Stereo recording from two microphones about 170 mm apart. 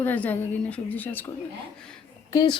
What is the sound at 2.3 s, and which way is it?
Speech, 25° left (ahead or behind).